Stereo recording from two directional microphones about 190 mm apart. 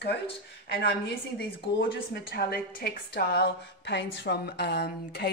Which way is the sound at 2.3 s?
55° left (ahead or behind).